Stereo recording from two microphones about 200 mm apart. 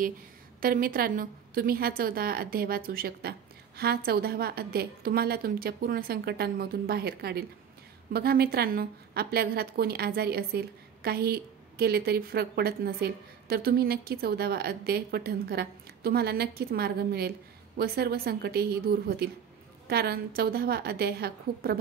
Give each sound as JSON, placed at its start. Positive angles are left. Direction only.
{"t": 0.6, "sound": "a woman's voice", "side_deg": -45}